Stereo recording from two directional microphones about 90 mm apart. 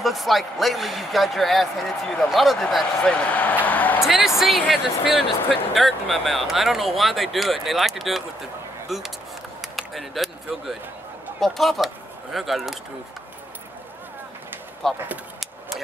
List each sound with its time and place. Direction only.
0.0 s speech: centre (ahead or behind)
3.0 s speech: 15° left (ahead or behind)
4.4 s speech: 5° right (ahead or behind)
9.6 s a sound: centre (ahead or behind)
11.3 s speech: centre (ahead or behind)
14.8 s speech: centre (ahead or behind)